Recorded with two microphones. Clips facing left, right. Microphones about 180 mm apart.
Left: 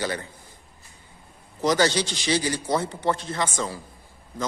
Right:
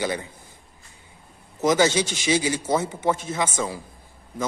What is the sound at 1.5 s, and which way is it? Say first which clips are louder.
A man's voice: right 2 dB; 10° right (ahead or behind).